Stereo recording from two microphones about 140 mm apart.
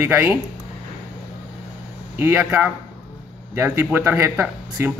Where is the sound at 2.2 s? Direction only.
15° right (ahead or behind).